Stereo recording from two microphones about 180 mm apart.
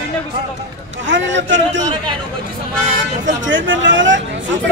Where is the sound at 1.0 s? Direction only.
90° right.